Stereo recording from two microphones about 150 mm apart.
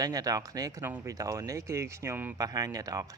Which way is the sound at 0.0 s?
25° right (ahead or behind).